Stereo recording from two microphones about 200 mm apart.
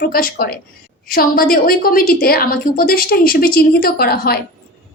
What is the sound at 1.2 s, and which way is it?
A woman's voice, 45° left (ahead or behind).